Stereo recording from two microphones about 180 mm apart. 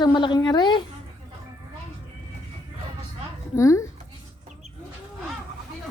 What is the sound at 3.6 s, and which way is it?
Speech, 15° left (ahead or behind).